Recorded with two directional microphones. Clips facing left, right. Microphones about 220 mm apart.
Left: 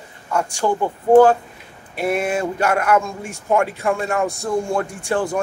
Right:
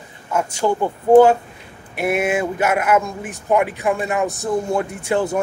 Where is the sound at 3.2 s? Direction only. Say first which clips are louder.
Right 1 dB; 20° right (ahead or behind).